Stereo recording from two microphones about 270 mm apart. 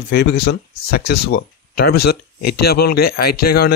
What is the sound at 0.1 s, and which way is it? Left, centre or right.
Speech, left.